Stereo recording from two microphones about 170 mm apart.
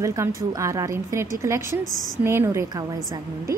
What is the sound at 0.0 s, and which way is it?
A woman's voice, 20° right (ahead or behind).